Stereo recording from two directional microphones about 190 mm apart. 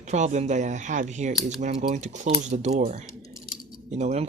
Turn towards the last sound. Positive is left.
turn(degrees=-35)  # may be behind; listen again after turning